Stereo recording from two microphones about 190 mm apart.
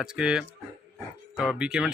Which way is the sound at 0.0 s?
5° right (ahead or behind).